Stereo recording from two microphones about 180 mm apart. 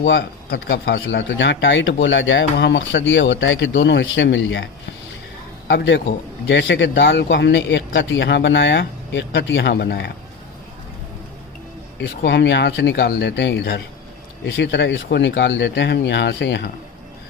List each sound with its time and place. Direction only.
0.0 s speech: 75° left (ahead or behind)
11.9 s speech: 75° left (ahead or behind)
14.4 s speech: 90° left